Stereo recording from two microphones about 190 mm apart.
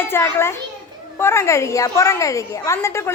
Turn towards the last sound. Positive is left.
turn(degrees=15)  # may be behind; listen again after turning